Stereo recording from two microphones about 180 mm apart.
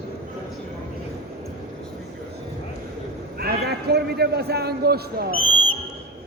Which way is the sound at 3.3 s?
60° right (ahead or behind).